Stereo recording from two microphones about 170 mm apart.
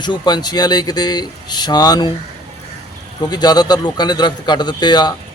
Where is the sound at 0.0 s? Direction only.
25° left (ahead or behind).